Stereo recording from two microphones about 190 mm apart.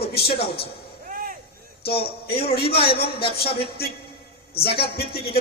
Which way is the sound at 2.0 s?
55° left (ahead or behind).